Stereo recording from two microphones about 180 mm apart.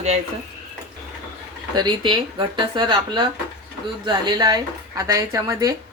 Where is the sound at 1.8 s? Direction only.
25° right (ahead or behind).